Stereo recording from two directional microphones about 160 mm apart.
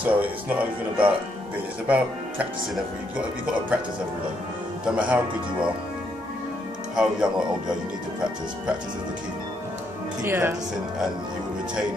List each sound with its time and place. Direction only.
0.0 s speech: 10° right (ahead or behind)
4.8 s speech: 10° right (ahead or behind)
7.0 s speech: 5° right (ahead or behind)
10.2 s speech: 15° right (ahead or behind)